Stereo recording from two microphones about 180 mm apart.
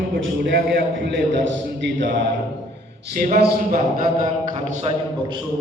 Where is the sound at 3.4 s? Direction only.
65° right (ahead or behind).